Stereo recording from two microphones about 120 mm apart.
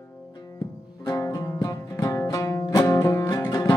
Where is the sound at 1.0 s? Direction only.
30° left (ahead or behind).